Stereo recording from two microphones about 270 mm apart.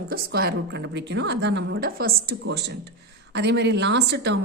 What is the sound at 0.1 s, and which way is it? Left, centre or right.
A woman's voice, right.